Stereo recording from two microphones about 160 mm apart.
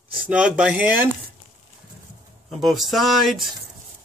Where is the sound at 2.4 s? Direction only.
Centre (ahead or behind).